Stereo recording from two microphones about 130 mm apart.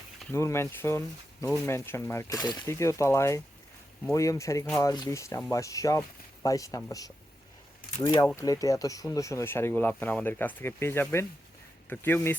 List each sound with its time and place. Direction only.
0.3 s speech: 20° left (ahead or behind)
2.6 s speech: 20° left (ahead or behind)